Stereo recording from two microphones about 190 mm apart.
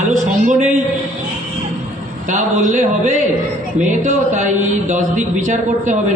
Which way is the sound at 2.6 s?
40° right (ahead or behind).